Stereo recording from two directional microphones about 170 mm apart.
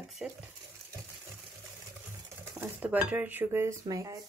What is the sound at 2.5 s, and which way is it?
A woman's voice, 10° right (ahead or behind).